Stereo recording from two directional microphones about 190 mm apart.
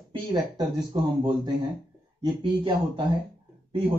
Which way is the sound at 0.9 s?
20° right (ahead or behind).